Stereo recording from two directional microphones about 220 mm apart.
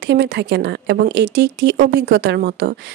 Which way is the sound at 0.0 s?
50° right (ahead or behind).